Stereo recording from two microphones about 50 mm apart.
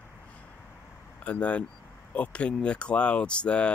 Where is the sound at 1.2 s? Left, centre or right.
Left.